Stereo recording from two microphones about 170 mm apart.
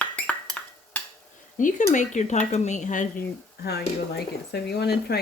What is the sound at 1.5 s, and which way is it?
Speech, 45° left (ahead or behind).